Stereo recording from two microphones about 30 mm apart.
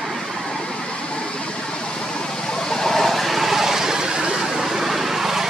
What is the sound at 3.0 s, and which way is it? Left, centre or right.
Vehicle, centre.